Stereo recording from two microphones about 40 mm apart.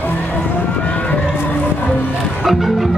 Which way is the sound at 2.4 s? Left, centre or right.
Centre.